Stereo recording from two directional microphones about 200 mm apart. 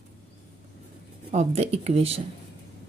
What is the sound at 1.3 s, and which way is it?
Speech, 30° right (ahead or behind).